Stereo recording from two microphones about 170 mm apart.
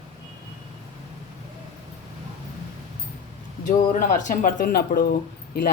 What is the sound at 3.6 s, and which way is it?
Speech, 50° left (ahead or behind).